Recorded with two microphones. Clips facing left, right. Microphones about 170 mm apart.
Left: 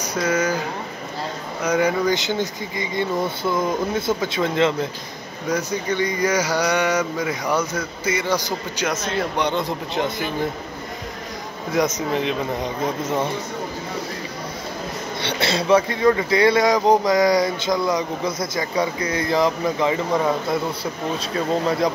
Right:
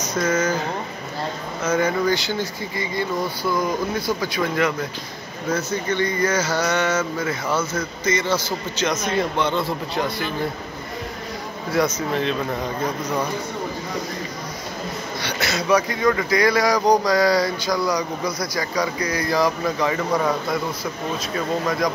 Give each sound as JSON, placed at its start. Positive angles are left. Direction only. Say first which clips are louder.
{"t": 0.1, "sound": "speech", "louder": "even", "side_deg": 10}
{"t": 1.6, "sound": "speech", "louder": "left 1 dB", "side_deg": 15}
{"t": 5.5, "sound": "speech", "louder": "even", "side_deg": 15}
{"t": 9.4, "sound": "speech", "louder": "even", "side_deg": 15}
{"t": 11.7, "sound": "speech", "louder": "even", "side_deg": 15}
{"t": 15.2, "sound": "speech", "louder": "left 3 dB", "side_deg": 30}
{"t": 21.6, "sound": "speech", "louder": "left 2 dB", "side_deg": 30}